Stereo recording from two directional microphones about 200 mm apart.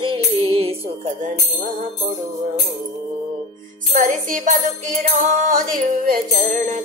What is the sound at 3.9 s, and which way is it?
Music, 40° right (ahead or behind).